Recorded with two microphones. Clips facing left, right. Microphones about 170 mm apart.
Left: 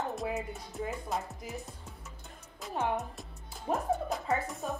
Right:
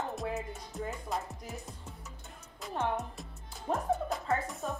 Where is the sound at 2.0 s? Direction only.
Centre (ahead or behind).